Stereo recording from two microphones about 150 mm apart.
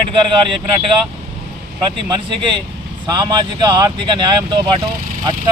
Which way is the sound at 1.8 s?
30° right (ahead or behind).